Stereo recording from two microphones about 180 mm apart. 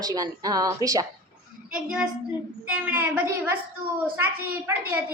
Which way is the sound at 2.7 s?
10° right (ahead or behind).